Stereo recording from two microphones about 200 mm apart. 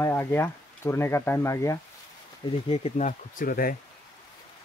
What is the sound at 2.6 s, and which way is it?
Speech, 30° left (ahead or behind).